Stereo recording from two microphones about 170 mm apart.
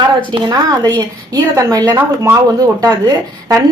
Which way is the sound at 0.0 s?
30° right (ahead or behind).